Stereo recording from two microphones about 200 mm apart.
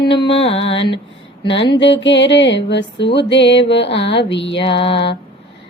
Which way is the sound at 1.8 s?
65° left (ahead or behind).